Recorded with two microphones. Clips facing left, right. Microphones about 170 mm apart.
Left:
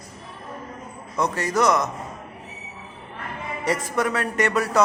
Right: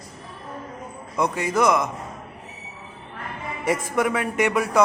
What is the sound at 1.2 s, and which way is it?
Speech, 10° right (ahead or behind).